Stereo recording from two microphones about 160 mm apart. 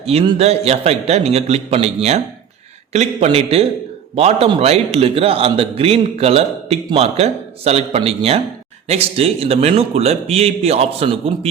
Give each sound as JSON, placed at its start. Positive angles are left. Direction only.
{"t": 0.0, "sound": "a man's voice", "side_deg": -40}